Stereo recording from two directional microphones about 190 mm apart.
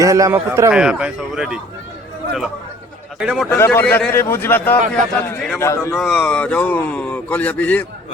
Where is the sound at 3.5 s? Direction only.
10° left (ahead or behind).